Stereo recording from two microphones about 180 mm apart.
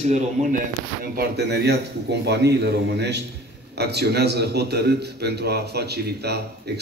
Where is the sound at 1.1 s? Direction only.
70° right (ahead or behind).